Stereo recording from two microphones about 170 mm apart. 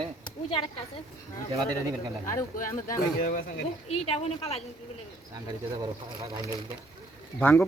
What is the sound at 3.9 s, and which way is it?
Speech, 35° left (ahead or behind).